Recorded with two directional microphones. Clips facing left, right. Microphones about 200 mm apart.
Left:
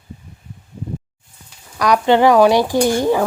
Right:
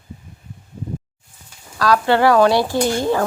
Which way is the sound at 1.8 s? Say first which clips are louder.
Left 2 dB; 20° left (ahead or behind).